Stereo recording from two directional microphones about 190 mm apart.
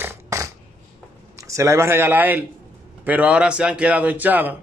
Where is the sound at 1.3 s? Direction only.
15° right (ahead or behind).